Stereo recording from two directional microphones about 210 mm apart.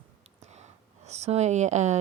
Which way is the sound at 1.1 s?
30° right (ahead or behind).